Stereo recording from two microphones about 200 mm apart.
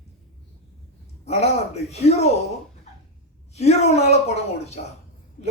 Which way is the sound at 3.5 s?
35° left (ahead or behind).